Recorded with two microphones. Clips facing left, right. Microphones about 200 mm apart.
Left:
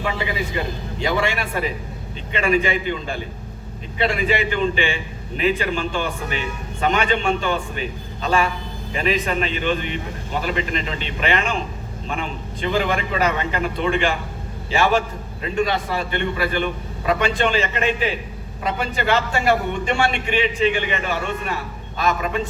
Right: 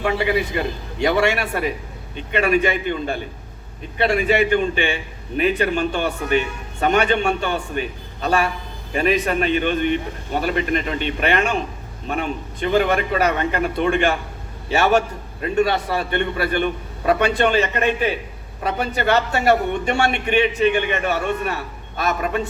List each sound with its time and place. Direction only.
0.0 s a man's voice: 55° right (ahead or behind)
15.4 s a man's voice: 55° right (ahead or behind)